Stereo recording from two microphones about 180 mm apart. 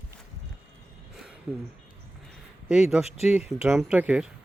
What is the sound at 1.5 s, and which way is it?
Speech, 10° right (ahead or behind).